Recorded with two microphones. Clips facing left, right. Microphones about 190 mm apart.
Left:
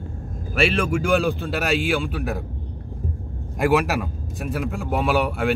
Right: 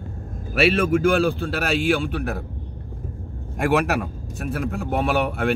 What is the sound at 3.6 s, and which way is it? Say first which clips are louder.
A man's voice: left 1 dB; centre (ahead or behind).